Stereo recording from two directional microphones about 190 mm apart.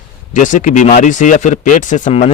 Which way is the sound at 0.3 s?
40° left (ahead or behind).